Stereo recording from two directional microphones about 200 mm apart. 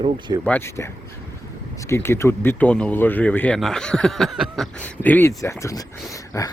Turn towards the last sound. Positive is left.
turn(degrees=15)  # may be behind; listen again after turning